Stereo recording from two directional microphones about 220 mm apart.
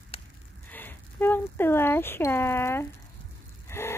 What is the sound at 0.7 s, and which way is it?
Speech, 10° left (ahead or behind).